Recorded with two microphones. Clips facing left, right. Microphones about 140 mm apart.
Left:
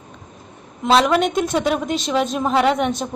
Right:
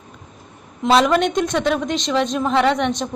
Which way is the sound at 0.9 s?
Centre (ahead or behind).